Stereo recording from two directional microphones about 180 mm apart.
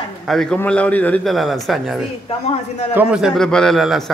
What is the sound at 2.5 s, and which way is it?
Speech, 35° left (ahead or behind).